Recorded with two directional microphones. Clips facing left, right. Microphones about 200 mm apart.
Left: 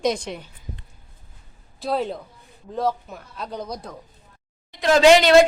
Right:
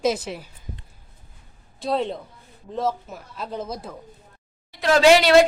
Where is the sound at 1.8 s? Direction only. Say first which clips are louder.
Even; centre (ahead or behind).